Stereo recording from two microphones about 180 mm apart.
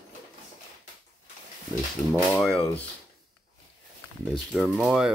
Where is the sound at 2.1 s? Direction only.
Centre (ahead or behind).